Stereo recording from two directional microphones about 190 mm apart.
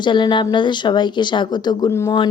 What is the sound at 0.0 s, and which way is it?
Speech, 25° left (ahead or behind).